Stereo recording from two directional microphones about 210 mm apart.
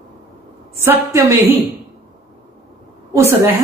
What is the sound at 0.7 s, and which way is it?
Speech, 15° right (ahead or behind).